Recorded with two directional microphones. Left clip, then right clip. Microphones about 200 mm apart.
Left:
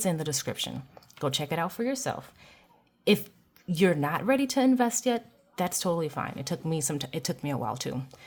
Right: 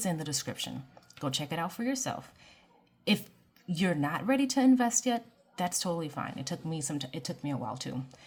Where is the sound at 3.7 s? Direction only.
30° left (ahead or behind).